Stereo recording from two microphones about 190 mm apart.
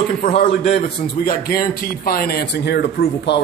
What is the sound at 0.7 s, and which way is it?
A man's voice, 55° left (ahead or behind).